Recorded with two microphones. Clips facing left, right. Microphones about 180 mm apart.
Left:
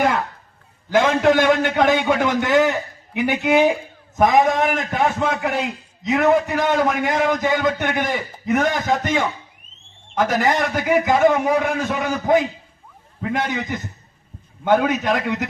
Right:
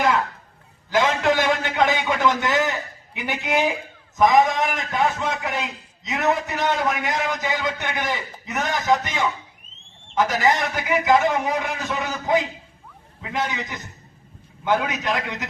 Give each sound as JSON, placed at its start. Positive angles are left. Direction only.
{"t": 0.9, "sound": "a man's voice", "side_deg": 50}